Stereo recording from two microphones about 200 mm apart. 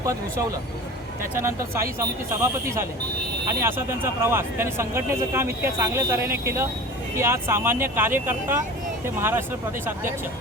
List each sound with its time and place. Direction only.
0.0 s a man's voice: 15° right (ahead or behind)